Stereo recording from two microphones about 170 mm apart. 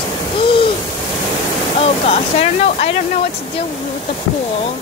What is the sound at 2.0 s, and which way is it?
Speech, 40° left (ahead or behind).